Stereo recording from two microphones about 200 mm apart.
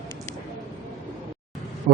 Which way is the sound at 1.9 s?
50° right (ahead or behind).